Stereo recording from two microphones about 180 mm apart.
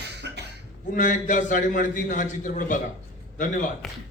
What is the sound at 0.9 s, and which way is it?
A man's voice, 45° left (ahead or behind).